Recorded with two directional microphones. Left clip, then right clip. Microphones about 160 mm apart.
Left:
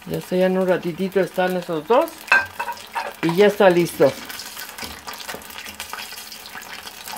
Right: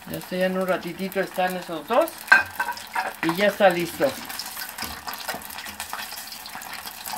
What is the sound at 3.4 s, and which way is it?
Speech, 55° left (ahead or behind).